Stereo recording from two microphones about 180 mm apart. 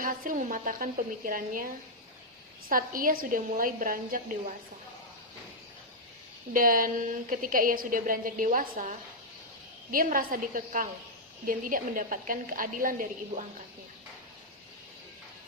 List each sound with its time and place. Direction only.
0.0 s a woman's voice: 50° right (ahead or behind)
2.6 s a woman's voice: 50° right (ahead or behind)
6.5 s a woman's voice: 50° right (ahead or behind)